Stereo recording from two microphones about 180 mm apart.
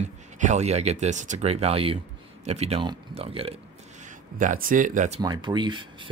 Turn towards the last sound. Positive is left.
turn(degrees=-25)  # may be behind; listen again after turning